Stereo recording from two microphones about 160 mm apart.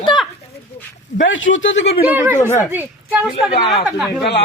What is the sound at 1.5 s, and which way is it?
Speech, 60° left (ahead or behind).